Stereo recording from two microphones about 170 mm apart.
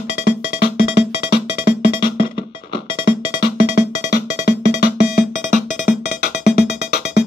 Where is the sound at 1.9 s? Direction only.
30° left (ahead or behind).